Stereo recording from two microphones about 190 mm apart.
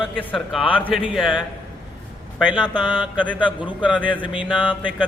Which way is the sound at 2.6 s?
25° left (ahead or behind).